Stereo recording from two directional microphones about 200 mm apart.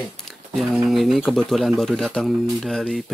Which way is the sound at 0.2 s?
Centre (ahead or behind).